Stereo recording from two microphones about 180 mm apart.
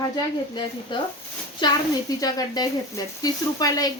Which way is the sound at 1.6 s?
25° left (ahead or behind).